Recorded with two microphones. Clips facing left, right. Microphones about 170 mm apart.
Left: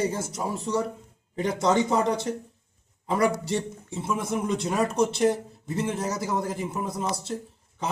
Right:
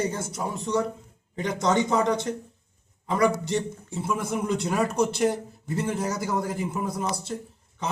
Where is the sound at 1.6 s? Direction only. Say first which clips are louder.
Left 1 dB; 30° left (ahead or behind).